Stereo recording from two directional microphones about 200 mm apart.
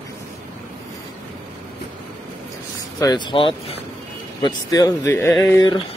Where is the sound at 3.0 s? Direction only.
20° left (ahead or behind).